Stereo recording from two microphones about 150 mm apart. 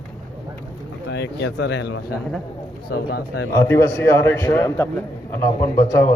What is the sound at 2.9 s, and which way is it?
Speech, 90° left.